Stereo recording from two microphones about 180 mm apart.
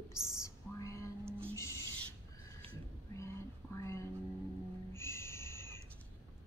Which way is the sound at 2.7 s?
15° left (ahead or behind).